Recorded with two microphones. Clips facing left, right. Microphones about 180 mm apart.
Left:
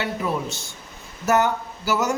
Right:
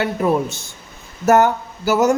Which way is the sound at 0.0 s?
50° right (ahead or behind).